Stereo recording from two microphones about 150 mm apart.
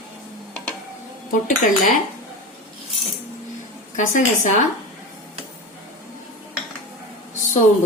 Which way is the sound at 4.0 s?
60° left (ahead or behind).